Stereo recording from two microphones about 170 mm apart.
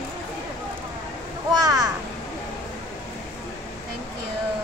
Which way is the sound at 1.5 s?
20° right (ahead or behind).